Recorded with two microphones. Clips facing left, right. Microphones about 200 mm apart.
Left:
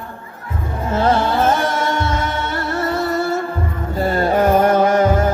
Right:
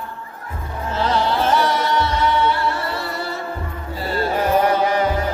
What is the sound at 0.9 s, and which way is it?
Music, 50° left (ahead or behind).